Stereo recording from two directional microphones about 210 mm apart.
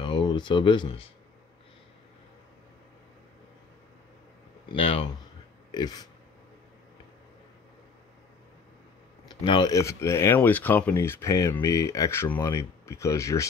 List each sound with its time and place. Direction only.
0.0 s speech: 20° left (ahead or behind)
4.7 s speech: 25° left (ahead or behind)
9.3 s speech: 20° left (ahead or behind)